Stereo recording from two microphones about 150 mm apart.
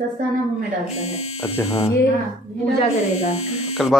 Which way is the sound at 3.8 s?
Centre (ahead or behind).